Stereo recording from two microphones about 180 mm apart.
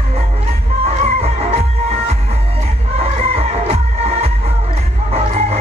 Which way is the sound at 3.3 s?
35° right (ahead or behind).